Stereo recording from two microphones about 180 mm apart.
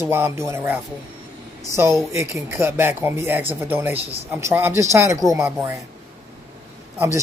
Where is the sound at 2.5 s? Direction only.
15° right (ahead or behind).